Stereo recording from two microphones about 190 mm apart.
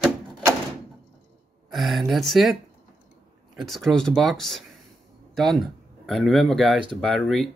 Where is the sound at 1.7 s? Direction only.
Centre (ahead or behind).